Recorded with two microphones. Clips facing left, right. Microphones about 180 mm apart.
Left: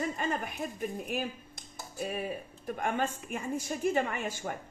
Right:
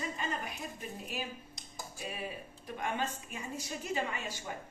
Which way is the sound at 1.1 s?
50° left (ahead or behind).